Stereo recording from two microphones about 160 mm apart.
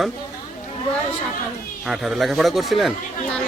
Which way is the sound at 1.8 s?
Centre (ahead or behind).